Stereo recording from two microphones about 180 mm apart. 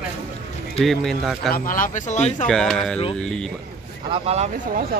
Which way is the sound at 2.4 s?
5° left (ahead or behind).